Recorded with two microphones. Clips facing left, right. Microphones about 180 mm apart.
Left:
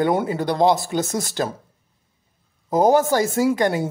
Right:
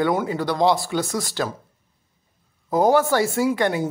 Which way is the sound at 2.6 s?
20° left (ahead or behind).